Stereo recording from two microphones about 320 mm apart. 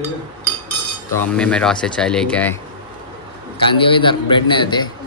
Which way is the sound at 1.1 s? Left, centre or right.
Centre.